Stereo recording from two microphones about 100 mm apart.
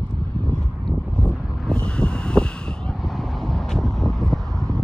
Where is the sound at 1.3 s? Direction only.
10° left (ahead or behind).